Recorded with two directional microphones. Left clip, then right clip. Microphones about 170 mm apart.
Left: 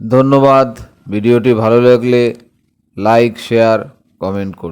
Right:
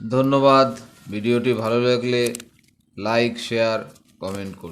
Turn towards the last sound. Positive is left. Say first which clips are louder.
# left 11 dB
turn(degrees=45)  # may be behind; listen again after turning